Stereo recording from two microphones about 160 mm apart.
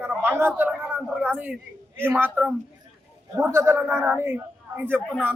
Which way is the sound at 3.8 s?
5° left (ahead or behind).